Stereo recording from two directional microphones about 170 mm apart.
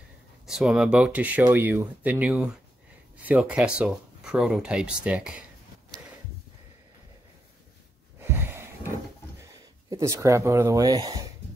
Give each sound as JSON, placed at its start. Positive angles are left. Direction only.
{"t": 0.5, "sound": "speech", "side_deg": -5}
{"t": 8.2, "sound": "a sound", "side_deg": -15}
{"t": 9.8, "sound": "speech", "side_deg": -20}